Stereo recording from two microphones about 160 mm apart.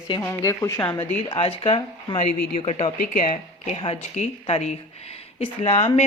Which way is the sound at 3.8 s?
40° left (ahead or behind).